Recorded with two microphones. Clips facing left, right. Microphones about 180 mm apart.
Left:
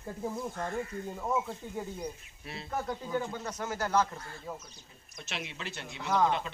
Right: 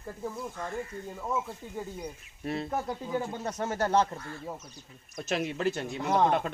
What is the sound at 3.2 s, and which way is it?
Speech, 30° right (ahead or behind).